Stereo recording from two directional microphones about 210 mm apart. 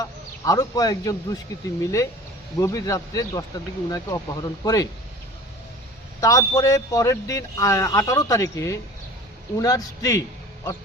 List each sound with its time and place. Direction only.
0.0 s a man's voice: 15° left (ahead or behind)
6.1 s a man's voice: 15° left (ahead or behind)